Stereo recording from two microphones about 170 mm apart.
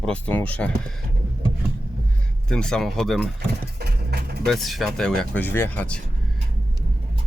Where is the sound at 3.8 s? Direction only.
65° right (ahead or behind).